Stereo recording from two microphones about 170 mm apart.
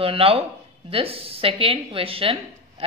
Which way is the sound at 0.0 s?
35° right (ahead or behind).